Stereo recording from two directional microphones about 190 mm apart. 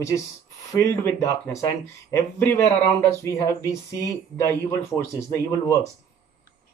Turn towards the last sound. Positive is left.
turn(degrees=15)  # may be behind; listen again after turning